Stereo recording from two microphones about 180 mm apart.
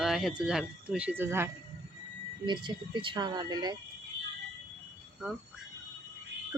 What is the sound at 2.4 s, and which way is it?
Speech, 25° right (ahead or behind).